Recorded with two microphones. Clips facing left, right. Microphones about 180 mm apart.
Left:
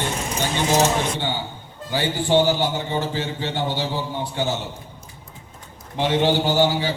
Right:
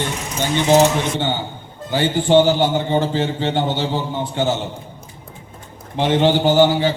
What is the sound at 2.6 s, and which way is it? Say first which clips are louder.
A man's voice: right 6 dB; 55° right (ahead or behind).